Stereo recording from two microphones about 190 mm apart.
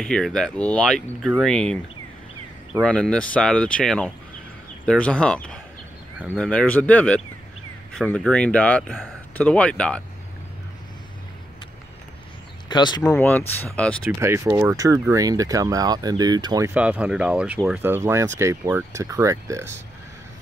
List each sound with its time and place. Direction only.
0.0 s speech: 5° left (ahead or behind)
2.8 s speech: 5° left (ahead or behind)
12.6 s speech: 20° left (ahead or behind)
13.0 s speech: 10° left (ahead or behind)
14.2 s speech: 15° right (ahead or behind)
16.7 s speech: 5° right (ahead or behind)